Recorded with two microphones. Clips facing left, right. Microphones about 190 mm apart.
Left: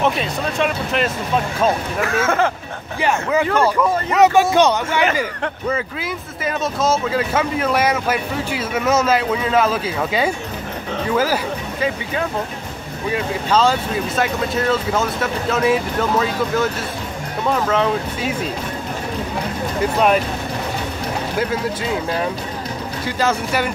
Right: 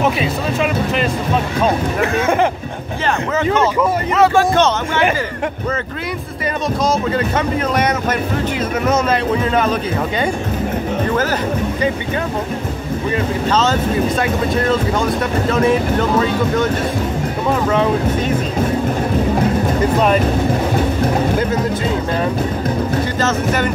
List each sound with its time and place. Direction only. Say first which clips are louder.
0.0 s speech: right 2 dB; 5° right (ahead or behind)
2.1 s speech: right 2 dB; 15° right (ahead or behind)
4.1 s speech: left 1 dB; 15° left (ahead or behind)
6.4 s speech: right 1 dB; 5° left (ahead or behind)
13.1 s speech: right 1 dB; 10° left (ahead or behind)
17.6 s speech: right 3 dB; centre (ahead or behind)
23.2 s speech: left 1 dB; 10° left (ahead or behind)